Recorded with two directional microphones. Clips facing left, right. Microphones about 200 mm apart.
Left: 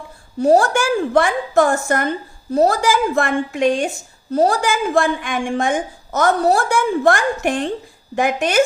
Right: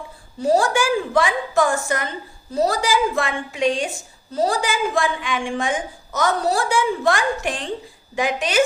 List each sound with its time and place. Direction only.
0.4 s a woman's voice: 60° left (ahead or behind)